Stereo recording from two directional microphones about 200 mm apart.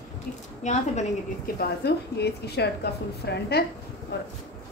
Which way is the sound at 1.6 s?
55° left (ahead or behind).